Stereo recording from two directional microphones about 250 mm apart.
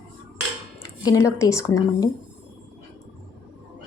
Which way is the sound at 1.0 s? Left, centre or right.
Centre.